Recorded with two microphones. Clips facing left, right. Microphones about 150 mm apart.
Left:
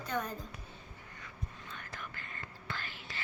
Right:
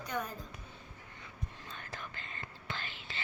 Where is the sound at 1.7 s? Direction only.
30° right (ahead or behind).